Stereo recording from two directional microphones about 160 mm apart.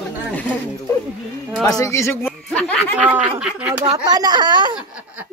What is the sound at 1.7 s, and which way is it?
Speech, 20° left (ahead or behind).